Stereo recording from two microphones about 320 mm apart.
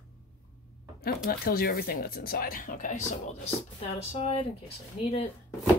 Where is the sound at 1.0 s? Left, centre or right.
Left.